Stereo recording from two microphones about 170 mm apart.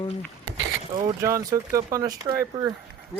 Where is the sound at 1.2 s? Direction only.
20° right (ahead or behind).